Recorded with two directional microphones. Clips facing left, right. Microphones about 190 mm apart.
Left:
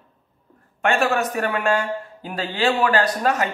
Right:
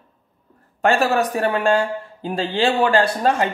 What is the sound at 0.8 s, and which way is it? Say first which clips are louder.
A man's voice: right 3 dB; 35° right (ahead or behind).